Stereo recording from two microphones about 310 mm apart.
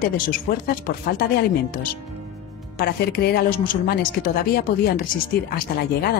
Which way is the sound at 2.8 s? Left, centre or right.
Left.